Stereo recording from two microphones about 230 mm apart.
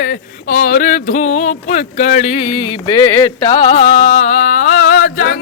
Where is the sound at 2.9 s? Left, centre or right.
Centre; by 5.3 s left.